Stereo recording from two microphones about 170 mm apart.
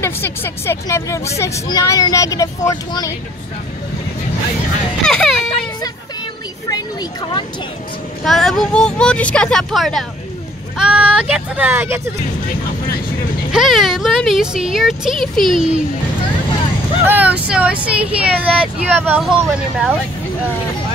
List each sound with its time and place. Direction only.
0.0 s speech: 15° left (ahead or behind)
5.0 s speech: centre (ahead or behind)
6.7 s a sound: 25° left (ahead or behind)
8.2 s speech: centre (ahead or behind)
13.5 s speech: centre (ahead or behind)
17.0 s speech: 10° right (ahead or behind)